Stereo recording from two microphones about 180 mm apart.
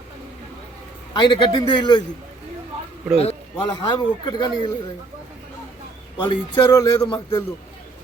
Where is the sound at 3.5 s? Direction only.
25° left (ahead or behind).